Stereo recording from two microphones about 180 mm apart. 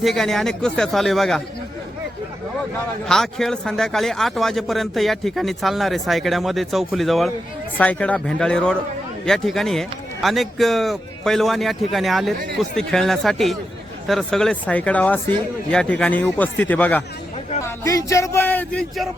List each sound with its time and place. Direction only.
0.0 s speech: centre (ahead or behind)
3.1 s speech: centre (ahead or behind)